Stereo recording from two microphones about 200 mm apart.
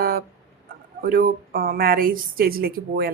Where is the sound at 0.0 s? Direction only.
45° right (ahead or behind).